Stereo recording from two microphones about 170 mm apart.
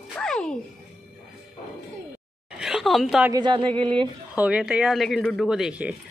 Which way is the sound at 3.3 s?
25° right (ahead or behind).